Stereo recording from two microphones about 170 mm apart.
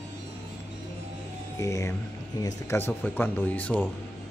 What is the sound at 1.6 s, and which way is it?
Speech, 20° left (ahead or behind).